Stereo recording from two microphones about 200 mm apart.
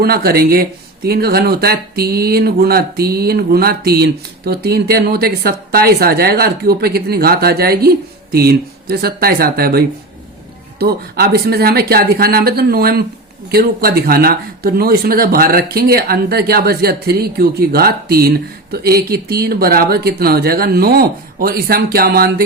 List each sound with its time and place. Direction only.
0.0 s speech: 50° right (ahead or behind)